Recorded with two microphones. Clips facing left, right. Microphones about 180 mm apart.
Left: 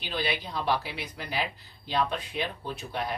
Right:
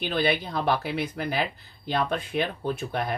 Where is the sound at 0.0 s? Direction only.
55° right (ahead or behind).